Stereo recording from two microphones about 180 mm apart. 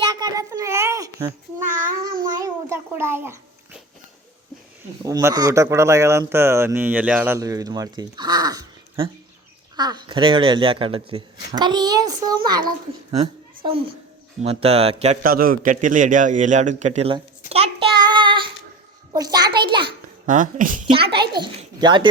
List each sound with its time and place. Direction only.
0.1 s a sound: 25° right (ahead or behind)
5.0 s speech: 20° right (ahead or behind)
13.2 s a sound: 30° right (ahead or behind)
14.4 s speech: 35° right (ahead or behind)
15.2 s a man's voice: 55° right (ahead or behind); by 17.2 s 35° right (ahead or behind)
17.5 s child singing: 35° right (ahead or behind)
19.1 s speech: 20° right (ahead or behind)
20.2 s a man's voice: 45° right (ahead or behind)
20.9 s speech: 30° right (ahead or behind)